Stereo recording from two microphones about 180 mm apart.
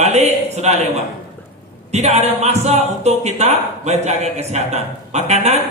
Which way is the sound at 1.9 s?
40° right (ahead or behind).